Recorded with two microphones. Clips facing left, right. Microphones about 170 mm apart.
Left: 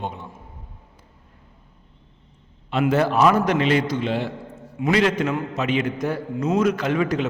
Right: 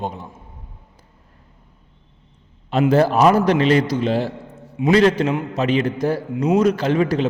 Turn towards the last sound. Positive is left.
turn(degrees=-30)  # may be behind; listen again after turning